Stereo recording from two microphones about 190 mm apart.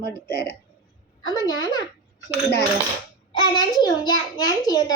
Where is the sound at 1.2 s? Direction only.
20° left (ahead or behind).